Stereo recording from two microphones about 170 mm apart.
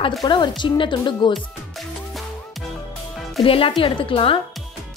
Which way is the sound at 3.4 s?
30° left (ahead or behind).